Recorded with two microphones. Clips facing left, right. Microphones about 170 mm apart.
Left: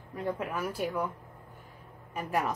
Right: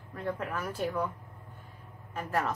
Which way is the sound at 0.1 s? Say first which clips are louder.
Left 1 dB; 15° left (ahead or behind).